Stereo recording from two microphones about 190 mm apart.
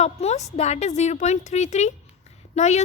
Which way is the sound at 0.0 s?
35° left (ahead or behind).